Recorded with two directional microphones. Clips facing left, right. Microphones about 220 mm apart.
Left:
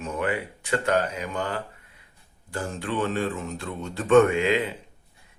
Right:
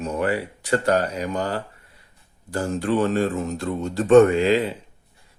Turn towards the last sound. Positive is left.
turn(degrees=-35)  # may be behind; listen again after turning